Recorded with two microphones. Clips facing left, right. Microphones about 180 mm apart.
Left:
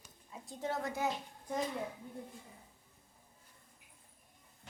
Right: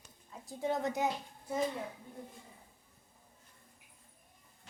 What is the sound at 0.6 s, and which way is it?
Speech, 20° right (ahead or behind).